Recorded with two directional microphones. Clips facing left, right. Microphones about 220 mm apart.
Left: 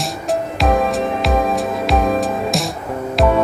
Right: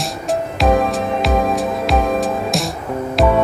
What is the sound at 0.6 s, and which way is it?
Music, centre (ahead or behind).